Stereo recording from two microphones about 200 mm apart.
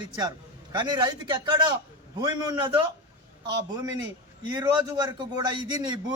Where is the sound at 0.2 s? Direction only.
20° right (ahead or behind).